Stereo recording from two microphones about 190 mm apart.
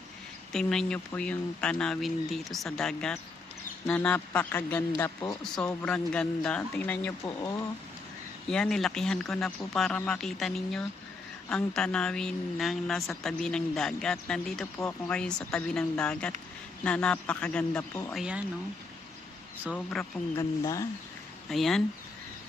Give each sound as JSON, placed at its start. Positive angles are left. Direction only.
{"t": 0.5, "sound": "a woman's voice", "side_deg": 5}
{"t": 5.5, "sound": "speech", "side_deg": 5}
{"t": 8.4, "sound": "a woman's voice", "side_deg": 5}
{"t": 18.1, "sound": "a woman's voice", "side_deg": -5}
{"t": 19.6, "sound": "a woman's voice", "side_deg": 5}
{"t": 20.3, "sound": "speech", "side_deg": 15}
{"t": 21.5, "sound": "a woman's voice", "side_deg": 0}